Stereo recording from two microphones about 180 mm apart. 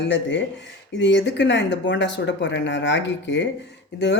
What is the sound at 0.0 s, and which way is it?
Speech, 75° left (ahead or behind).